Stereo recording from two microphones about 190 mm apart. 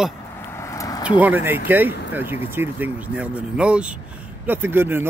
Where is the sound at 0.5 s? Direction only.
15° left (ahead or behind).